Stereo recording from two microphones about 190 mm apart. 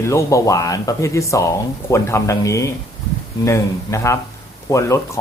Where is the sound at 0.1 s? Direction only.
15° left (ahead or behind).